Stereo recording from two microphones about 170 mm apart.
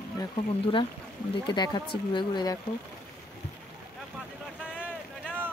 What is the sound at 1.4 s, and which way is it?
Speech, 25° left (ahead or behind).